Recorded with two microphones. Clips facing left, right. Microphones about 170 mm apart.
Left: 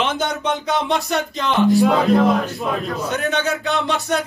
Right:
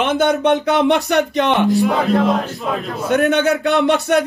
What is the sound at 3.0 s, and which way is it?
Speech, 60° right (ahead or behind).